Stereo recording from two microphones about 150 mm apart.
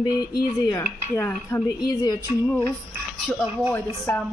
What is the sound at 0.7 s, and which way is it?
Speech, 20° left (ahead or behind).